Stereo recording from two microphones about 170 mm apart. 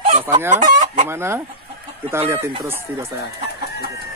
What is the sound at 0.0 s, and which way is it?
Fowl, 40° right (ahead or behind).